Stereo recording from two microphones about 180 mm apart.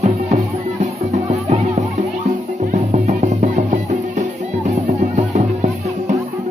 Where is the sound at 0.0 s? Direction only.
40° right (ahead or behind).